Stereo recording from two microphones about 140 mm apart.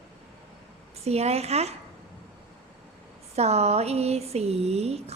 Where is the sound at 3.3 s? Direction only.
50° right (ahead or behind).